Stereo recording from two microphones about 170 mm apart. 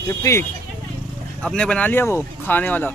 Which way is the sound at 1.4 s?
5° left (ahead or behind).